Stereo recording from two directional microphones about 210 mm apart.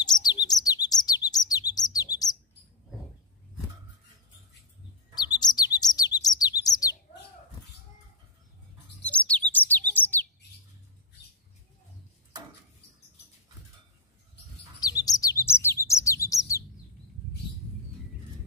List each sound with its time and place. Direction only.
0.0 s chirp: 20° left (ahead or behind)
5.1 s bird: 20° left (ahead or behind)
9.0 s bird: 5° left (ahead or behind)
14.8 s bird: 15° left (ahead or behind)